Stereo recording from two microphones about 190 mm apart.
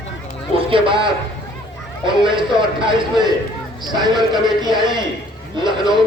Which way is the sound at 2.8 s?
25° right (ahead or behind).